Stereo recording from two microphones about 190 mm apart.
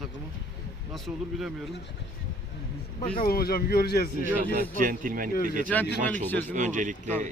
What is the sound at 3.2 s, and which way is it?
Speech, 50° left (ahead or behind).